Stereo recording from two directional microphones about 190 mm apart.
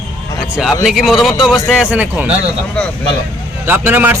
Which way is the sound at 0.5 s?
5° right (ahead or behind).